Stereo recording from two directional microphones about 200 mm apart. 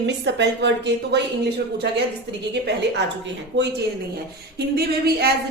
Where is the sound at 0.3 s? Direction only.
60° right (ahead or behind).